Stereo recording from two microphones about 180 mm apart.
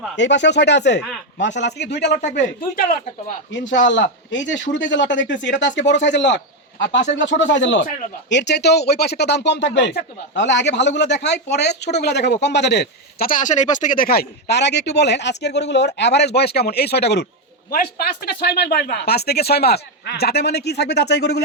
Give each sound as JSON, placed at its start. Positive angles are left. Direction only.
{"t": 0.2, "sound": "speech", "side_deg": 80}
{"t": 3.5, "sound": "speech", "side_deg": 85}
{"t": 8.3, "sound": "speech", "side_deg": 75}
{"t": 17.7, "sound": "speech", "side_deg": 55}